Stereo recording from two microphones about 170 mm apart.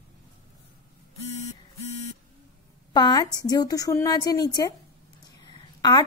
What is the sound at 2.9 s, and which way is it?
A woman's voice, 25° left (ahead or behind).